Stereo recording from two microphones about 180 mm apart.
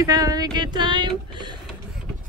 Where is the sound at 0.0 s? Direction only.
20° right (ahead or behind).